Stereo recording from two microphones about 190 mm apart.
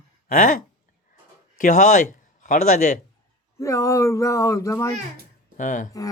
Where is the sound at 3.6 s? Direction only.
15° left (ahead or behind).